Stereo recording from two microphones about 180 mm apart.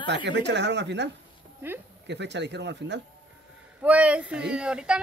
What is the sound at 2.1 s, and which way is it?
Speech, 75° right (ahead or behind).